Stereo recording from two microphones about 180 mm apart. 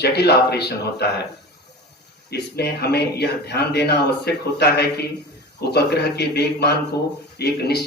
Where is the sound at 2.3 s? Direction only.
65° left (ahead or behind).